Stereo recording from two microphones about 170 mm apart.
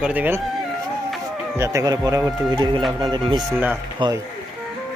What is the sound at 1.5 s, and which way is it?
Speech, 15° right (ahead or behind).